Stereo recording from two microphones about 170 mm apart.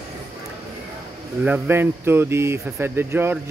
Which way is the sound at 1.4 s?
10° right (ahead or behind).